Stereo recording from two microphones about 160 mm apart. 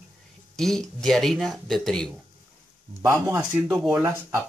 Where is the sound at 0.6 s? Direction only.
5° left (ahead or behind).